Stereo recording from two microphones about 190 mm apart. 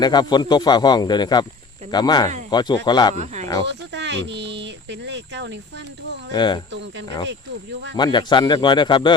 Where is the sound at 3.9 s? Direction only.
70° right (ahead or behind).